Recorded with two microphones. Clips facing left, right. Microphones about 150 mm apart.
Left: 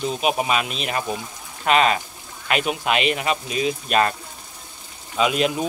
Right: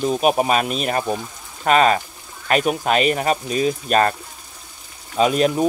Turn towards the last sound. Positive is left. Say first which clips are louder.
# right 4 dB
turn(degrees=-40)  # may be behind; listen again after turning